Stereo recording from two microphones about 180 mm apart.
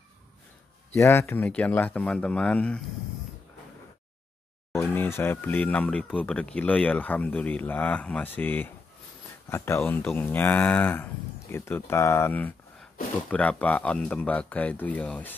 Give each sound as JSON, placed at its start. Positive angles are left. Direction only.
{"t": 0.9, "sound": "speech", "side_deg": 15}
{"t": 4.7, "sound": "speech", "side_deg": 10}